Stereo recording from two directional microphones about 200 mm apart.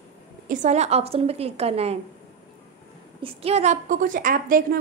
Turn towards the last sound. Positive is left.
turn(degrees=-45)  # may be behind; listen again after turning